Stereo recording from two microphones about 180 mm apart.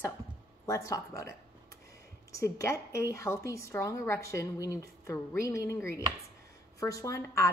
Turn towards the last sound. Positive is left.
turn(degrees=15)  # may be behind; listen again after turning